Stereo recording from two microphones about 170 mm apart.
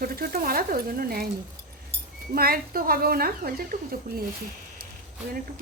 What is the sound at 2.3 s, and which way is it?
Speech, 60° right (ahead or behind).